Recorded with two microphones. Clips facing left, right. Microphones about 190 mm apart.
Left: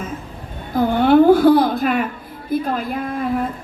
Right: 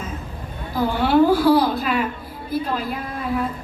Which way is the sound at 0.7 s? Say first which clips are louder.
Left 5 dB; 50° left (ahead or behind).